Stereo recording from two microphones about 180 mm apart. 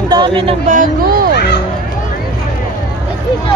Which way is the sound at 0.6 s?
50° right (ahead or behind).